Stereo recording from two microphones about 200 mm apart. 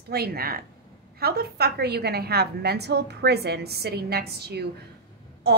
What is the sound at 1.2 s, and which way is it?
A woman's voice, 50° right (ahead or behind).